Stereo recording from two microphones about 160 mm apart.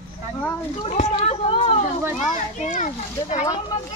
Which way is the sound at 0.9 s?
45° left (ahead or behind).